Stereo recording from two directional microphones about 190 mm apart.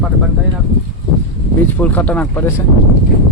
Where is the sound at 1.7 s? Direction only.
10° left (ahead or behind).